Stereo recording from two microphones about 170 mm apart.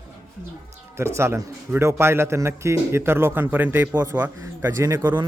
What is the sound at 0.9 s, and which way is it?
A man's voice, 15° right (ahead or behind).